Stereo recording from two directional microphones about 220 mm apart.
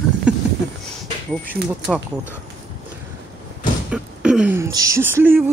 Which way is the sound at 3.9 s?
5° right (ahead or behind).